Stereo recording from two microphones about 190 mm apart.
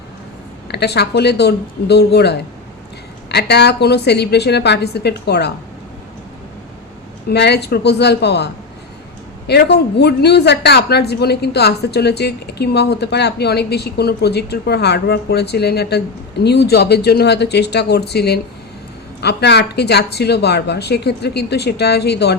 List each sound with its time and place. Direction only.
0.7 s speech: 60° left (ahead or behind)
3.3 s speech: 60° left (ahead or behind)
7.3 s speech: 60° left (ahead or behind)
9.5 s speech: 60° left (ahead or behind)